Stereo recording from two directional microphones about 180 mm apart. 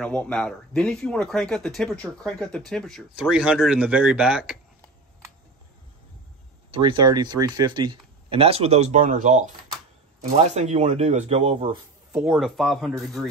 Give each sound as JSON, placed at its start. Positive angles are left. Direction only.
{"t": 0.0, "sound": "speech", "side_deg": 5}
{"t": 6.7, "sound": "speech", "side_deg": -25}
{"t": 12.1, "sound": "speech", "side_deg": -5}